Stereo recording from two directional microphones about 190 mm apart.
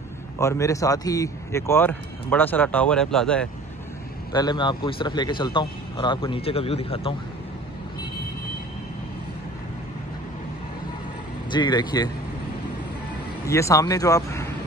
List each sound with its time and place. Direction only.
0.4 s speech: 15° left (ahead or behind)
4.3 s a man's voice: 20° left (ahead or behind)
11.5 s a man's voice: 25° left (ahead or behind)
13.5 s speech: 15° left (ahead or behind)